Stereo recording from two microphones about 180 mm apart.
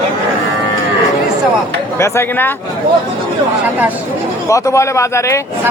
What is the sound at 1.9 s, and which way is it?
Speech, 15° left (ahead or behind).